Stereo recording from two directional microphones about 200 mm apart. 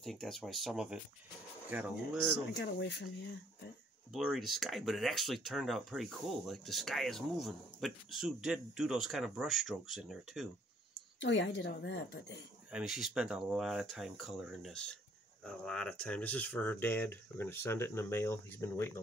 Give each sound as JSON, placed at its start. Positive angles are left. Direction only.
{"t": 0.0, "sound": "speech", "side_deg": 0}
{"t": 2.5, "sound": "a woman's voice", "side_deg": 60}
{"t": 4.1, "sound": "speech", "side_deg": 0}
{"t": 11.1, "sound": "a woman's voice", "side_deg": 65}
{"t": 12.7, "sound": "speech", "side_deg": 0}